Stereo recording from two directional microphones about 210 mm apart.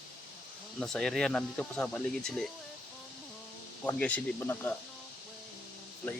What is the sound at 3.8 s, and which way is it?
Speech, 5° left (ahead or behind).